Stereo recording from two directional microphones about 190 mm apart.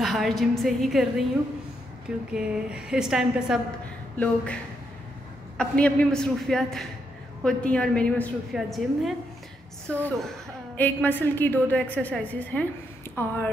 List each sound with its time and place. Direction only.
0.0 s a woman's voice: centre (ahead or behind)
5.6 s a woman's voice: 5° left (ahead or behind)